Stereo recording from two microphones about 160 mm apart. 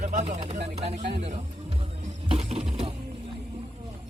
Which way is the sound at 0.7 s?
40° right (ahead or behind).